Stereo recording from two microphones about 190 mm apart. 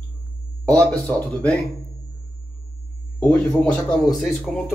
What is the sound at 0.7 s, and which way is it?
Speech, 10° left (ahead or behind).